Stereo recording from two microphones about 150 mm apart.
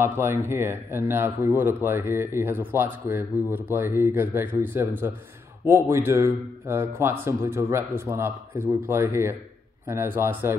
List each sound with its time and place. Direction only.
0.0 s speech: 15° right (ahead or behind)